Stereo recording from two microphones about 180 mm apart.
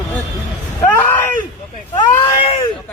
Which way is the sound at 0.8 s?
10° left (ahead or behind).